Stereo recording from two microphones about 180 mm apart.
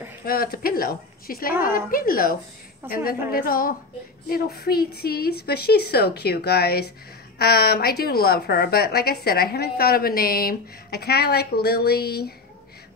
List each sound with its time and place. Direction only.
0.2 s a woman's voice: 55° left (ahead or behind)
1.5 s a woman's voice: 10° right (ahead or behind)
1.9 s a woman's voice: 55° left (ahead or behind)
2.8 s a woman's voice: 10° right (ahead or behind)
3.3 s a woman's voice: 55° left (ahead or behind)